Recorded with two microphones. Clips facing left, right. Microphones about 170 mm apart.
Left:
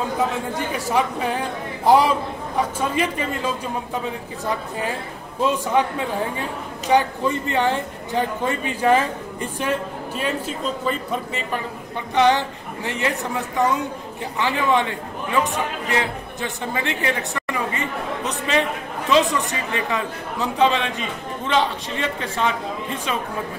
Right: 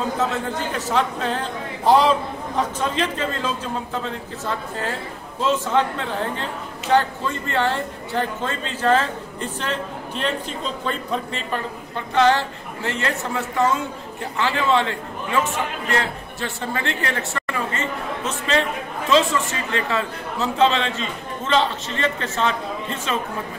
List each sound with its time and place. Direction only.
0.2 s a man's voice: 10° left (ahead or behind)